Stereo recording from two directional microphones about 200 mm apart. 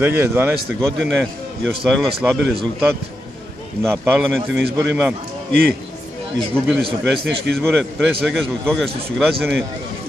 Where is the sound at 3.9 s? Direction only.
5° right (ahead or behind).